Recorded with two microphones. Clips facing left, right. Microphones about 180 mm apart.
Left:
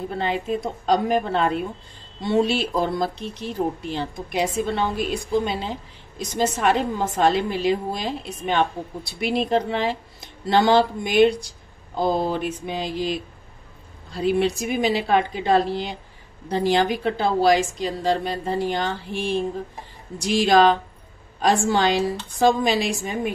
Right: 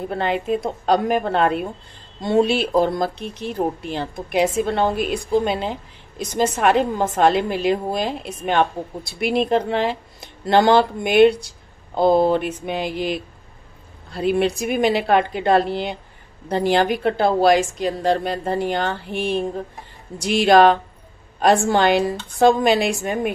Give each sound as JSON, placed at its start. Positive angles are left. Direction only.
{"t": 0.1, "sound": "a woman's voice", "side_deg": -60}